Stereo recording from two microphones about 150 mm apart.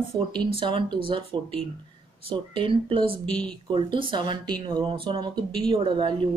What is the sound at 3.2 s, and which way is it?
Speech, 5° left (ahead or behind).